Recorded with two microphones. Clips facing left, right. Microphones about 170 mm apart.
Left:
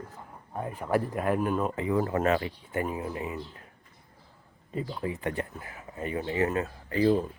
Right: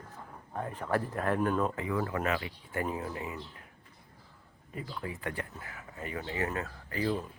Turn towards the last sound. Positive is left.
turn(degrees=30)  # may be behind; listen again after turning